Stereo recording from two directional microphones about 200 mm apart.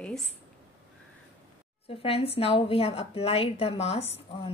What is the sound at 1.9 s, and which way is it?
A woman's voice, 30° left (ahead or behind).